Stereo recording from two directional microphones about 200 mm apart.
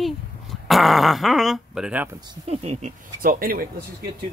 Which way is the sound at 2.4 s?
30° right (ahead or behind).